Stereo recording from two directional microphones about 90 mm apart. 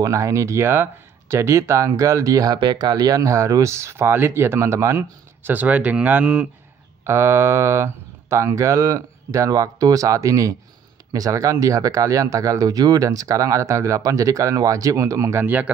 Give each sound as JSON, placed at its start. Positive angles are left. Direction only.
{"t": 0.0, "sound": "speech", "side_deg": -35}
{"t": 7.1, "sound": "speech", "side_deg": -30}
{"t": 15.4, "sound": "speech", "side_deg": -20}